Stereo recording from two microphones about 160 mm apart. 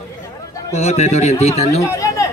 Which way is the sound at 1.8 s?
20° left (ahead or behind).